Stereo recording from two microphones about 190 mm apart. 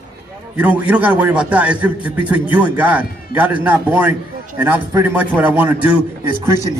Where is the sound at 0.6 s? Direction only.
5° right (ahead or behind).